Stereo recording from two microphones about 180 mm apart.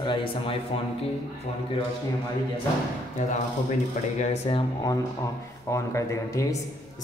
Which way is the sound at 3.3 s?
40° left (ahead or behind).